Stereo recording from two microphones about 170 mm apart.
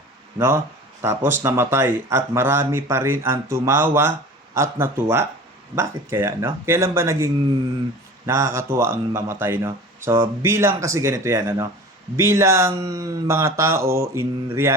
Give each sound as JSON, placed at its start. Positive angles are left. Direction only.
{"t": 0.3, "sound": "speech", "side_deg": -15}
{"t": 8.3, "sound": "speech", "side_deg": -15}